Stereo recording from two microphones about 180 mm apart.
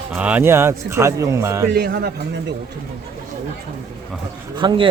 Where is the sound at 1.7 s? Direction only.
65° right (ahead or behind).